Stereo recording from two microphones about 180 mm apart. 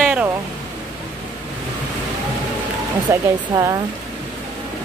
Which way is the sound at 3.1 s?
15° right (ahead or behind).